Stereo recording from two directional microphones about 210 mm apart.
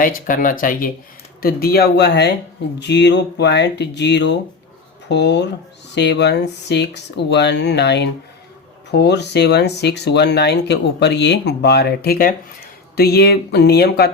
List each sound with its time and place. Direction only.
0.0 s speech: 40° left (ahead or behind)